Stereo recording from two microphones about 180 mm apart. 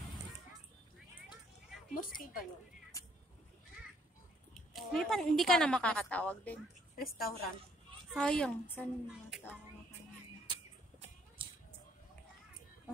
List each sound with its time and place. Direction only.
2.0 s speech: 50° left (ahead or behind)
2.9 s speech: 20° left (ahead or behind)
4.7 s a woman's voice: centre (ahead or behind)
7.0 s a woman's voice: 55° left (ahead or behind)
8.1 s a woman's voice: 5° left (ahead or behind)
10.4 s music: 30° right (ahead or behind)